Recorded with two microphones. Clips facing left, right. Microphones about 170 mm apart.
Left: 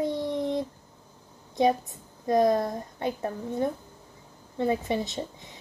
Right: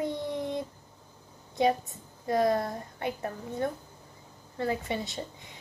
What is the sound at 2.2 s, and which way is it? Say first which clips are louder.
A woman's voice: left 4 dB; 20° left (ahead or behind).